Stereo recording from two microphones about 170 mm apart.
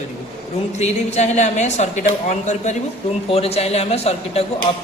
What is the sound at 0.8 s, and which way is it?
A woman's voice, 40° left (ahead or behind).